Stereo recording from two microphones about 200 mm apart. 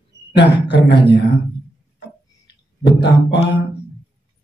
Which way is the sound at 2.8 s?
55° left (ahead or behind).